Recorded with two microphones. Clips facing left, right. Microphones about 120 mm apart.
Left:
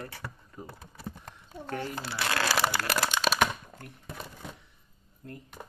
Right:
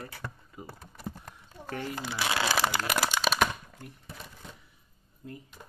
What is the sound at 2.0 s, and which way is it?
Speech, 15° right (ahead or behind).